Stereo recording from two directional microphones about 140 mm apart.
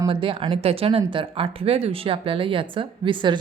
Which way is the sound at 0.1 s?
40° right (ahead or behind).